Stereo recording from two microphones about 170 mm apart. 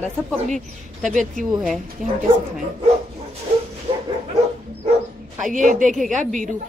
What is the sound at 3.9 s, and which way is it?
Bow-wow, 30° right (ahead or behind).